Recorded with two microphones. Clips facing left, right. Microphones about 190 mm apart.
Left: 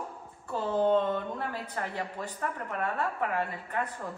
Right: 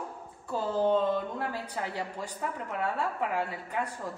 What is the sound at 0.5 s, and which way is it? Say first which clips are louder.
Speech: left 1 dB; 5° right (ahead or behind).